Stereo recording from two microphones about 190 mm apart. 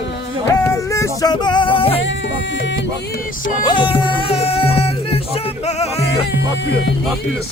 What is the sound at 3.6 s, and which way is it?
Music, 25° left (ahead or behind).